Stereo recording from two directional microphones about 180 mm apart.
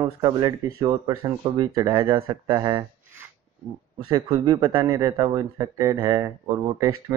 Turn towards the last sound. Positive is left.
turn(degrees=-20)  # may be behind; listen again after turning